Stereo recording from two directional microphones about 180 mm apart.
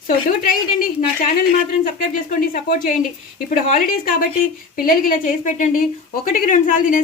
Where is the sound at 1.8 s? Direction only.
50° left (ahead or behind).